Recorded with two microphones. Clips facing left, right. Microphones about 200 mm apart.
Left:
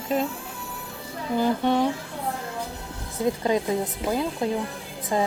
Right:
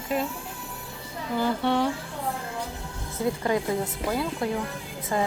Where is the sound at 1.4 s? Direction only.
15° left (ahead or behind).